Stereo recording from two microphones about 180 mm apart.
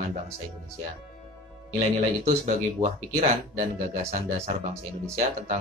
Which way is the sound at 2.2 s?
35° right (ahead or behind).